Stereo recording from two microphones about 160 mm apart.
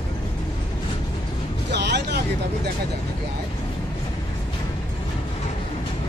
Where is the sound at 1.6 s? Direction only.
90° right.